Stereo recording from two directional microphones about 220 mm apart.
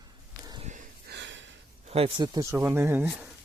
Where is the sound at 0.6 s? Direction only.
35° right (ahead or behind).